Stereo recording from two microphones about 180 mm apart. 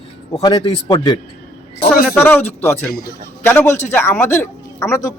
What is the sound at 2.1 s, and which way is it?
Speech, 10° left (ahead or behind).